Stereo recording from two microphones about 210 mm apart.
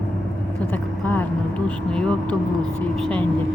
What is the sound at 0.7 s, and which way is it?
Speech, 5° left (ahead or behind).